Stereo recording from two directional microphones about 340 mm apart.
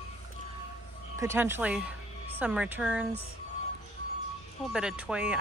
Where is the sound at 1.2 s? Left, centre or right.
Centre.